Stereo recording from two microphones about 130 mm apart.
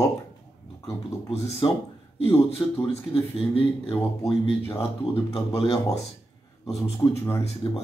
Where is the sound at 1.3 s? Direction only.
55° left (ahead or behind).